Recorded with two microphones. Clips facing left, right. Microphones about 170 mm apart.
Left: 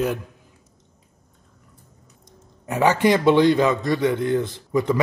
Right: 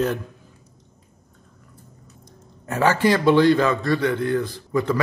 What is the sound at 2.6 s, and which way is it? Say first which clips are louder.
A man's voice: left 1 dB; 15° left (ahead or behind).